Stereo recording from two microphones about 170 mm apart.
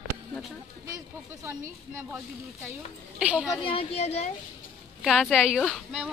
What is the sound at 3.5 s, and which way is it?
Speech, 30° left (ahead or behind).